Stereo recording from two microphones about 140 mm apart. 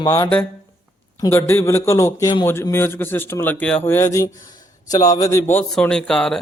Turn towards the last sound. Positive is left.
turn(degrees=5)  # may be behind; listen again after turning